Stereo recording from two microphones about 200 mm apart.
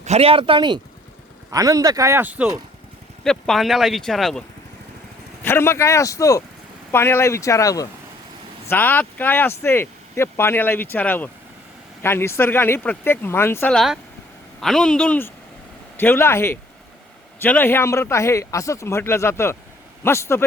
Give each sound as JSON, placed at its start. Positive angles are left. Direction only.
{"t": 0.0, "sound": "speech", "side_deg": -30}
{"t": 5.4, "sound": "speech", "side_deg": 10}